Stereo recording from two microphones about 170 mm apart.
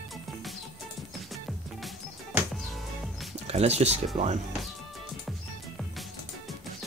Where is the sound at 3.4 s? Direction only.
40° right (ahead or behind).